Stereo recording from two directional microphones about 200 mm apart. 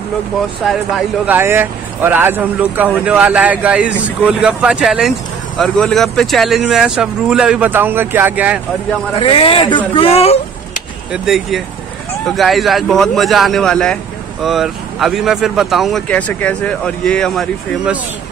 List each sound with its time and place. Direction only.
0.7 s speech: 5° right (ahead or behind)
9.2 s a man's voice: 25° left (ahead or behind)
11.2 s speech: centre (ahead or behind)